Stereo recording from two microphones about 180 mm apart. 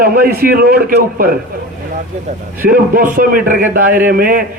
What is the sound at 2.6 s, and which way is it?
A man's voice, 55° right (ahead or behind).